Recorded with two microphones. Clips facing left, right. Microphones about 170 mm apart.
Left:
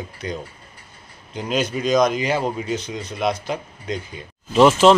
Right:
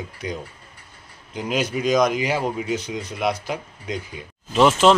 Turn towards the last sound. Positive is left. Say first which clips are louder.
# left 3 dB
turn(degrees=0)  # may be behind; listen again after turning